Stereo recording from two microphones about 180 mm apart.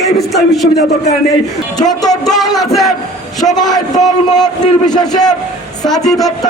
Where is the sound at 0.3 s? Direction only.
Centre (ahead or behind).